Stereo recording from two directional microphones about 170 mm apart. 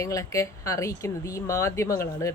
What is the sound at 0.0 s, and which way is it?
A woman's voice, 20° left (ahead or behind).